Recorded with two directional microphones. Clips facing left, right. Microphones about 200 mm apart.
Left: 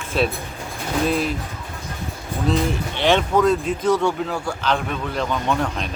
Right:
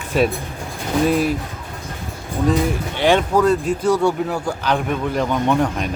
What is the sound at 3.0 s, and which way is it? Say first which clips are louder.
Speech: right 2 dB; 10° right (ahead or behind).